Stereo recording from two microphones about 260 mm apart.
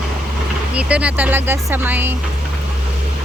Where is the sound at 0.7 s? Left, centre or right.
Centre.